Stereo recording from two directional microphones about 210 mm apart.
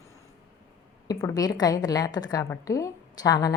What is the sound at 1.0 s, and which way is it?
Speech, 15° left (ahead or behind).